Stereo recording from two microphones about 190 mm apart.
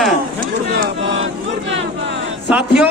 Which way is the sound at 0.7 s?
55° right (ahead or behind).